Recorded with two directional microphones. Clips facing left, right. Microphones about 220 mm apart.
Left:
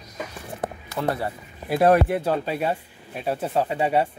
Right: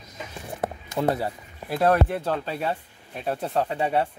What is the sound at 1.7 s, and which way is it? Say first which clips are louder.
Speech: left 3 dB; 10° left (ahead or behind).